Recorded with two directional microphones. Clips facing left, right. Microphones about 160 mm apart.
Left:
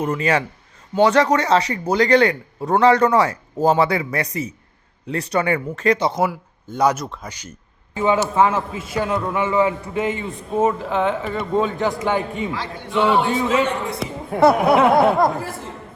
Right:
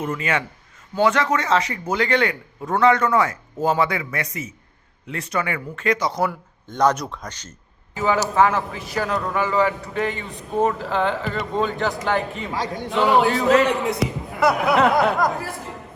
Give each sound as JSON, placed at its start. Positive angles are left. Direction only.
{"t": 0.0, "sound": "a man's voice", "side_deg": 35}
{"t": 6.7, "sound": "speech", "side_deg": 10}
{"t": 7.9, "sound": "a man's voice", "side_deg": 25}
{"t": 10.5, "sound": "a man's voice", "side_deg": 0}
{"t": 12.5, "sound": "a man's voice", "side_deg": -40}
{"t": 12.9, "sound": "a man's voice", "side_deg": 0}
{"t": 14.3, "sound": "a man's voice", "side_deg": 30}
{"t": 14.7, "sound": "a man's voice", "side_deg": 0}
{"t": 14.9, "sound": "a man's voice", "side_deg": 25}